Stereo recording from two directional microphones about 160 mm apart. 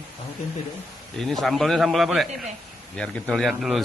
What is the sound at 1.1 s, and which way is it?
Speech, centre (ahead or behind).